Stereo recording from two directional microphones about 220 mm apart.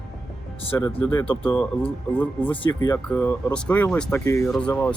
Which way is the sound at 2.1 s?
5° left (ahead or behind).